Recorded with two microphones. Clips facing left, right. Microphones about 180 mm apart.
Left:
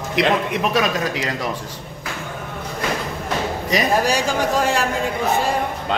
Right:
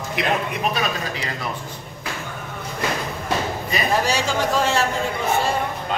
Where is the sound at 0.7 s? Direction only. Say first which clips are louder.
Left 5 dB; 80° left.